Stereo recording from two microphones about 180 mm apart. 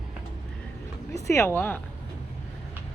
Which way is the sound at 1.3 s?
15° left (ahead or behind).